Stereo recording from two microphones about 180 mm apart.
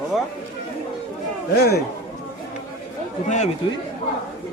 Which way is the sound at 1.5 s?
60° left (ahead or behind).